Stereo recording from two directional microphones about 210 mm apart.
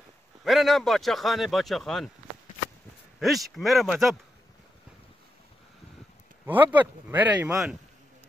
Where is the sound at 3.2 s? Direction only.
Centre (ahead or behind).